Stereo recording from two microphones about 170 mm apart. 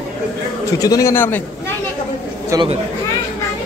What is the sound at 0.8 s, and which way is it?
Speech, 20° left (ahead or behind).